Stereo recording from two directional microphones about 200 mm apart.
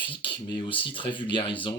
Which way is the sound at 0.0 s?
25° left (ahead or behind).